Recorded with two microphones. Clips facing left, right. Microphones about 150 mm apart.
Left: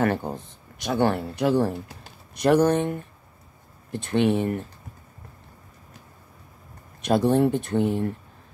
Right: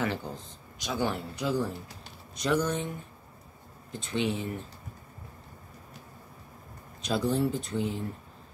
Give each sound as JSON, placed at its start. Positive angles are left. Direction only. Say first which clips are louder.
{"t": 0.0, "sound": "speech", "louder": "left 8 dB", "side_deg": 55}
{"t": 7.0, "sound": "speech", "louder": "left 8 dB", "side_deg": 60}